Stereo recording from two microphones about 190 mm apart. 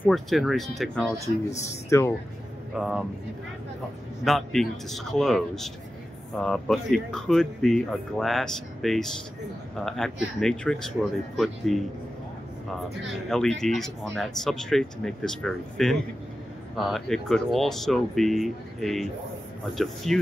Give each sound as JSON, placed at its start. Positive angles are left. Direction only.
{"t": 0.0, "sound": "speech", "side_deg": 0}
{"t": 1.2, "sound": "speech", "side_deg": 35}
{"t": 1.9, "sound": "speech", "side_deg": 15}
{"t": 2.8, "sound": "speech", "side_deg": -5}
{"t": 4.2, "sound": "speech", "side_deg": 0}
{"t": 13.3, "sound": "speech", "side_deg": 5}